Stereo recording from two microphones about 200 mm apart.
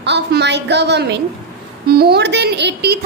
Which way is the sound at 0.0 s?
60° right (ahead or behind).